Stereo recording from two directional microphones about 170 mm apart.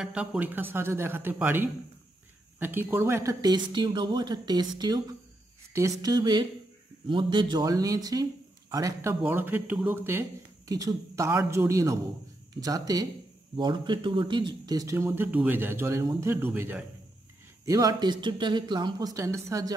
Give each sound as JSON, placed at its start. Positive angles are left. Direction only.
{"t": 0.0, "sound": "speech", "side_deg": -5}